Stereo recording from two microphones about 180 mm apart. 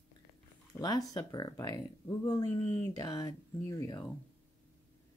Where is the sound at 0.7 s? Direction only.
20° left (ahead or behind).